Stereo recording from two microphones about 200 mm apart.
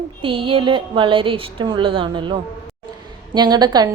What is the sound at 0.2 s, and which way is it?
A woman's voice, 25° right (ahead or behind).